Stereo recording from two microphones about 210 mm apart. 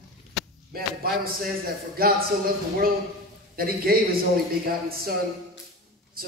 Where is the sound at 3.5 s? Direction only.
45° right (ahead or behind).